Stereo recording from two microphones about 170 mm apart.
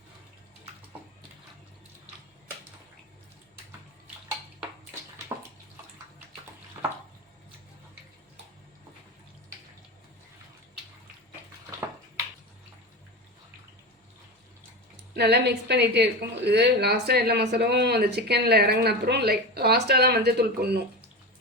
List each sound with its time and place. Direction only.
15.1 s a woman's voice: 75° right (ahead or behind)